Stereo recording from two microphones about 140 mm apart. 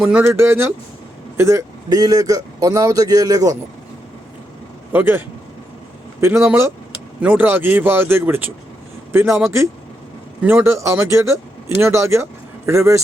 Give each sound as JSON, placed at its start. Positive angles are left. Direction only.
{"t": 0.0, "sound": "a man's voice", "side_deg": -10}
{"t": 4.9, "sound": "a man's voice", "side_deg": -15}
{"t": 10.4, "sound": "a man's voice", "side_deg": -15}